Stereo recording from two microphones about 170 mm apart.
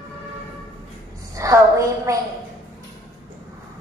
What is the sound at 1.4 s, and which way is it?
Speech, 20° right (ahead or behind).